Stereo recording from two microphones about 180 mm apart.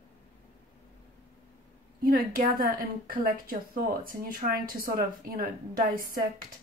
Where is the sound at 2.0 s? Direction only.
50° right (ahead or behind).